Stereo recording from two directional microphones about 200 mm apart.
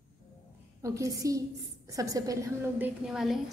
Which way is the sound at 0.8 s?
15° right (ahead or behind).